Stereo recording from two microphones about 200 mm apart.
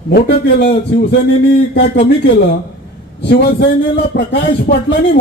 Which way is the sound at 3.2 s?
55° left (ahead or behind).